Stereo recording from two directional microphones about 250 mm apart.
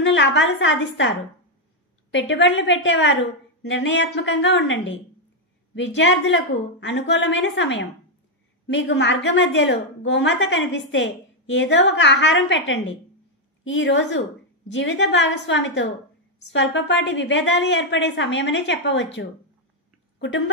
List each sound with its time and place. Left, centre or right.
0.0 s a woman's voice: left
2.1 s a woman's voice: left